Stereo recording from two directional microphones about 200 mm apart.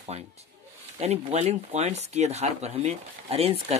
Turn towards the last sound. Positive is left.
turn(degrees=-30)  # may be behind; listen again after turning